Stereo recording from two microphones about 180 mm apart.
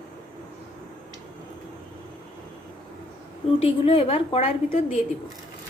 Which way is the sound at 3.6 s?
30° left (ahead or behind).